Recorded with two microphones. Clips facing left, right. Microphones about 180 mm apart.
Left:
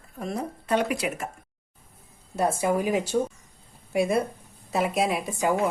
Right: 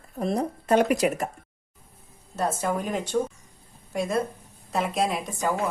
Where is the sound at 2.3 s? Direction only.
10° left (ahead or behind).